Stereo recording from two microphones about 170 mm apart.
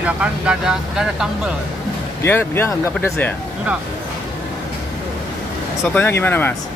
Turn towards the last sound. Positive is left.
turn(degrees=10)  # may be behind; listen again after turning